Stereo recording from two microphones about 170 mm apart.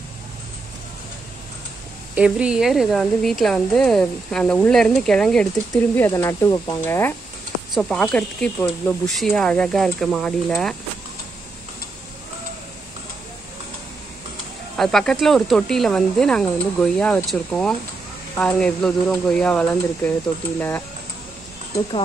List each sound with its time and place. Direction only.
2.1 s speech: 5° right (ahead or behind)
5.7 s speech: 15° left (ahead or behind)
14.8 s speech: 5° left (ahead or behind)